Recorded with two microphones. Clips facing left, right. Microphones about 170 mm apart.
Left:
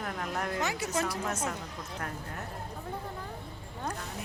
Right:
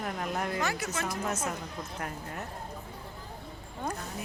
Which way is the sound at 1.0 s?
35° left (ahead or behind).